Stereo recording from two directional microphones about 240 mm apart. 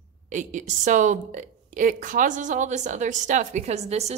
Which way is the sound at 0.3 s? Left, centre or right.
Right.